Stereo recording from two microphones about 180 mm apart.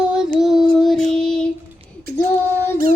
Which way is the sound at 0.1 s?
5° right (ahead or behind).